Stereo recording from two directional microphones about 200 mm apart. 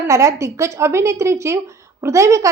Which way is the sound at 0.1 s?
15° right (ahead or behind).